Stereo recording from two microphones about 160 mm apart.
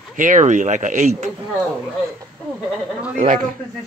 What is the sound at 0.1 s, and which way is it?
Speech, 55° right (ahead or behind).